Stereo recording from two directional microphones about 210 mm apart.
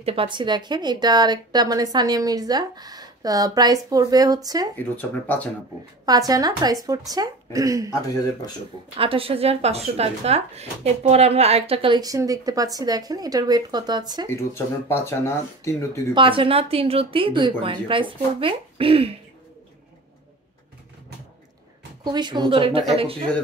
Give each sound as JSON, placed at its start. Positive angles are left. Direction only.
{"t": 0.0, "sound": "speech", "side_deg": -25}
{"t": 4.7, "sound": "speech", "side_deg": 10}
{"t": 6.0, "sound": "a woman's voice", "side_deg": -15}
{"t": 8.9, "sound": "speech", "side_deg": -25}
{"t": 14.3, "sound": "speech", "side_deg": 10}
{"t": 16.2, "sound": "speech", "side_deg": -25}
{"t": 22.0, "sound": "speech", "side_deg": -20}